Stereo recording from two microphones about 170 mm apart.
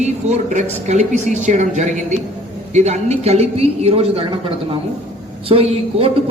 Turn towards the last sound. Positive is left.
turn(degrees=-35)  # may be behind; listen again after turning